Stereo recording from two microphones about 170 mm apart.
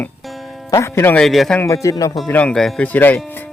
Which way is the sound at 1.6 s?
15° left (ahead or behind).